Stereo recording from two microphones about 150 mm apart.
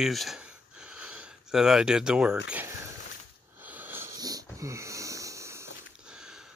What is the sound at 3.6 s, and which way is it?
Wheeze, 10° right (ahead or behind).